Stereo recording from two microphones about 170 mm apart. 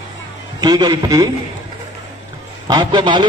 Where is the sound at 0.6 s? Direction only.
25° right (ahead or behind).